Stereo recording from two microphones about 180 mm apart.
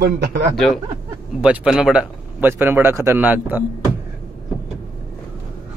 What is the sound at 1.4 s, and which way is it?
A man's voice, 5° right (ahead or behind).